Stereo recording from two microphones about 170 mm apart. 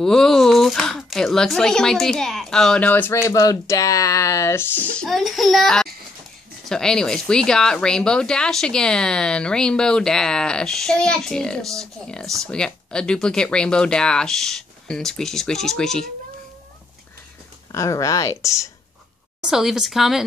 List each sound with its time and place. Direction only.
0.0 s speech: 5° left (ahead or behind)
17.7 s speech: 20° left (ahead or behind)
19.4 s speech: centre (ahead or behind)